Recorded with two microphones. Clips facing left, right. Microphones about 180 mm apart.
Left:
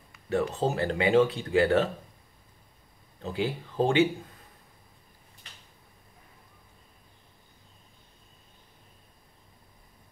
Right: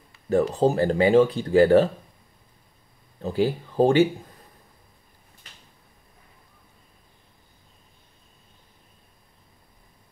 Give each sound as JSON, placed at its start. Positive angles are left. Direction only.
{"t": 0.1, "sound": "speech", "side_deg": -35}
{"t": 3.2, "sound": "speech", "side_deg": -35}